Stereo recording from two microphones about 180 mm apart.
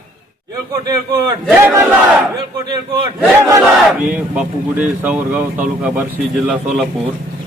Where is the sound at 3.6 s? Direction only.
5° right (ahead or behind).